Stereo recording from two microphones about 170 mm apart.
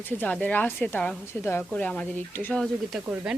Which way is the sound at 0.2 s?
10° left (ahead or behind).